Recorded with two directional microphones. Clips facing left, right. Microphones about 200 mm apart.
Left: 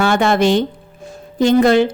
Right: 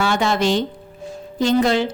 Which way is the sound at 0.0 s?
55° left (ahead or behind).